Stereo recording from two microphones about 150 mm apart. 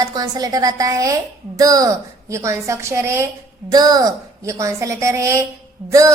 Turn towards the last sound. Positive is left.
turn(degrees=-20)  # may be behind; listen again after turning